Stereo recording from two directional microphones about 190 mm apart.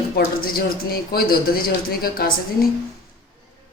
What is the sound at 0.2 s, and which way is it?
Speech, 50° left (ahead or behind).